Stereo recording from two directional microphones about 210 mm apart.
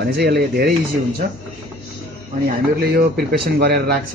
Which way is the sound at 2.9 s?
45° right (ahead or behind).